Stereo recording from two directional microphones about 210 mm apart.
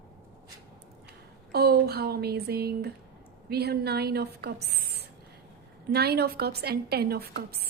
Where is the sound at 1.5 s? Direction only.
50° right (ahead or behind).